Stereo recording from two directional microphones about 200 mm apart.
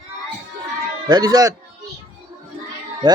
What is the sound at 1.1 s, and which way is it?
Speech, 20° right (ahead or behind).